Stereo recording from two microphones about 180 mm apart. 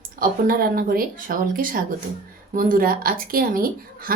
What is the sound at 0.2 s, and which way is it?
A woman's voice, 55° right (ahead or behind).